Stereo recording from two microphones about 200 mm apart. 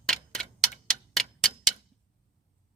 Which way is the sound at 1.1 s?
Centre (ahead or behind).